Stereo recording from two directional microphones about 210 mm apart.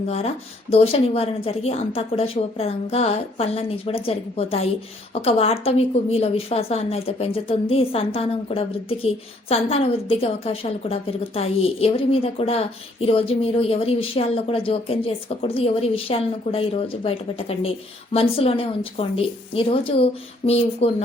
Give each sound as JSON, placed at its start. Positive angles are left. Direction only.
{"t": 0.7, "sound": "speech", "side_deg": 25}